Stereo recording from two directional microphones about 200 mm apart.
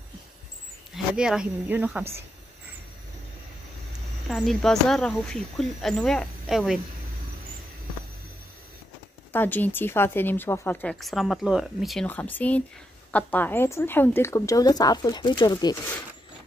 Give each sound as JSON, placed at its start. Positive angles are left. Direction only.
{"t": 0.9, "sound": "speech", "side_deg": -5}
{"t": 4.3, "sound": "speech", "side_deg": 0}
{"t": 9.3, "sound": "speech", "side_deg": 10}